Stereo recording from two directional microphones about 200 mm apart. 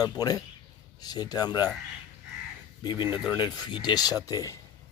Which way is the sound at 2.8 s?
20° left (ahead or behind).